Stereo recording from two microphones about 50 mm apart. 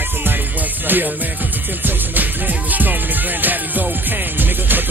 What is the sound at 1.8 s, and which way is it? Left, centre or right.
Music, right.